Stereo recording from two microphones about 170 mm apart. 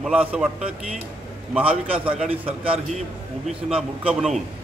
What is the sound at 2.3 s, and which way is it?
Speech, 35° right (ahead or behind).